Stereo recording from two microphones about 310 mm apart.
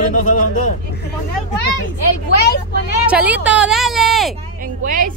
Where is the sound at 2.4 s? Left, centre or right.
Left.